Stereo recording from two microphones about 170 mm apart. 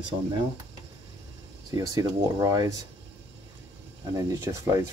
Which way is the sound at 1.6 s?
20° right (ahead or behind).